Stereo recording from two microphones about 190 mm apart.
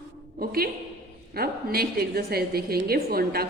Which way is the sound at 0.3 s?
50° right (ahead or behind).